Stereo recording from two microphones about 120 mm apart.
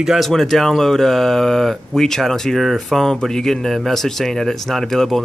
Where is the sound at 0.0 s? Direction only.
Centre (ahead or behind).